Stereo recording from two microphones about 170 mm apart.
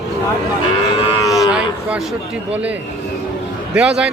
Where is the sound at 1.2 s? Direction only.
20° left (ahead or behind).